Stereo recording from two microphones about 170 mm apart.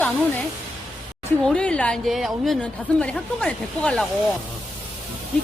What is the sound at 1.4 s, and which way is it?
A woman's voice, 5° left (ahead or behind).